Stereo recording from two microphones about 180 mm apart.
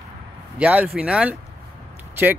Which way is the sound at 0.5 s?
5° right (ahead or behind).